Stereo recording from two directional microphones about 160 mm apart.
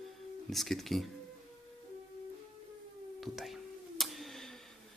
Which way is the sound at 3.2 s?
Centre (ahead or behind).